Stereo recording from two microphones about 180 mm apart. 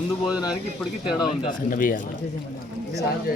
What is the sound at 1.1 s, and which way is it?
Speech, 25° left (ahead or behind).